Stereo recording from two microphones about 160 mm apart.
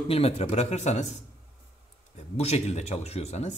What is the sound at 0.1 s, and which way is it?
Speech, 40° left (ahead or behind).